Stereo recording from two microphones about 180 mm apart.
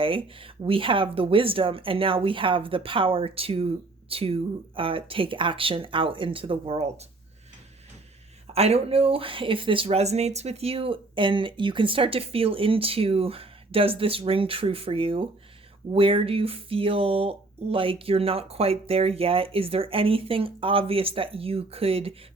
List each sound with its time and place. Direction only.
0.0 s speech: 30° right (ahead or behind)
8.5 s speech: 35° right (ahead or behind)